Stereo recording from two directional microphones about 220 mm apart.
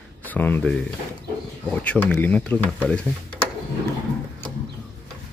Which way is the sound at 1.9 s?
5° left (ahead or behind).